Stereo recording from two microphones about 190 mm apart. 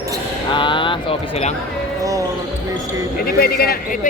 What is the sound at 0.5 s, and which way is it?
Speech, 25° left (ahead or behind).